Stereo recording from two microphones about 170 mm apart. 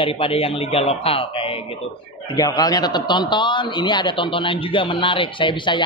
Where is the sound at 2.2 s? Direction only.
20° left (ahead or behind).